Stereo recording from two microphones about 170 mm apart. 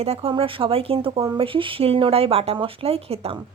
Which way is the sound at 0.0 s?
35° right (ahead or behind).